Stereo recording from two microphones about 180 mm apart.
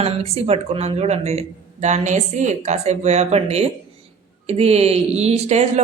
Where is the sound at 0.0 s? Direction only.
35° right (ahead or behind).